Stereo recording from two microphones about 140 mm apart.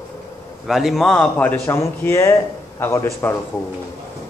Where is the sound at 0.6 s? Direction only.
Centre (ahead or behind); by 3.3 s 20° left (ahead or behind).